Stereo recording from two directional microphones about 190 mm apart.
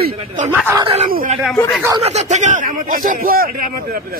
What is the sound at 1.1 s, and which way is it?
A man's voice, 45° right (ahead or behind).